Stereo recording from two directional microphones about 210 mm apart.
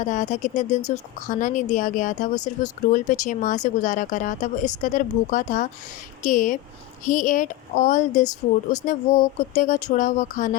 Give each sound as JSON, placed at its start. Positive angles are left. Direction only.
{"t": 0.0, "sound": "speech", "side_deg": 35}